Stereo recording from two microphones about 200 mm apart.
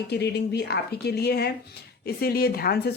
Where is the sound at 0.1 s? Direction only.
55° left (ahead or behind).